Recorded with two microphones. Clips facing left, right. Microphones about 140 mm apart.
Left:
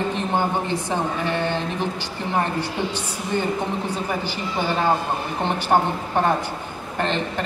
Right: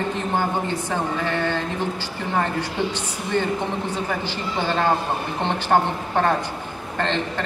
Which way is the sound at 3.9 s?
10° left (ahead or behind).